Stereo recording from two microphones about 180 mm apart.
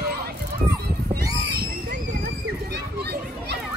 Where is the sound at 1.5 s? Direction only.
60° right (ahead or behind).